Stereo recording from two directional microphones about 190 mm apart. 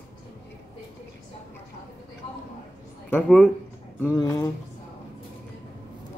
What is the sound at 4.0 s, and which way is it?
Speech, 15° left (ahead or behind).